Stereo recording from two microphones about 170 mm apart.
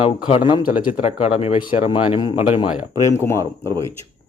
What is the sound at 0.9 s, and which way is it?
A man's voice, 40° left (ahead or behind).